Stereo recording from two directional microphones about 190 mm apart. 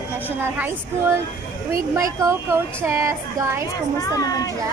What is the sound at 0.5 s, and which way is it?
A woman's voice, 10° right (ahead or behind).